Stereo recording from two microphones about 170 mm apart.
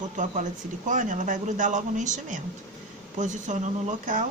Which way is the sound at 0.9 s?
45° right (ahead or behind).